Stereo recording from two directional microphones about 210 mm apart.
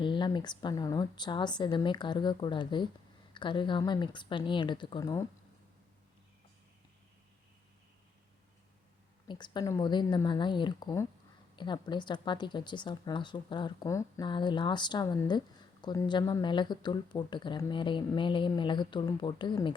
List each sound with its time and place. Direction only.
0.0 s speech: 20° left (ahead or behind)
9.2 s speech: 20° left (ahead or behind)